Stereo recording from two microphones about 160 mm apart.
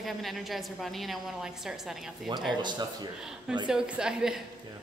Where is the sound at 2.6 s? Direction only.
25° right (ahead or behind).